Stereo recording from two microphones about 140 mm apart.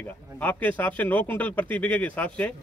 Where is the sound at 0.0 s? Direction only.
10° left (ahead or behind).